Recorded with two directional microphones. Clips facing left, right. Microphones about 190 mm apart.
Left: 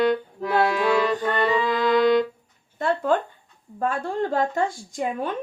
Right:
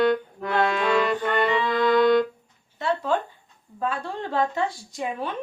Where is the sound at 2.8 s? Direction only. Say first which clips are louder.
Left 3 dB; 50° left (ahead or behind).